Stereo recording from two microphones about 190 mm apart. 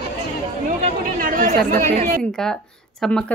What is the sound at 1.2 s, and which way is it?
Speech, 45° right (ahead or behind).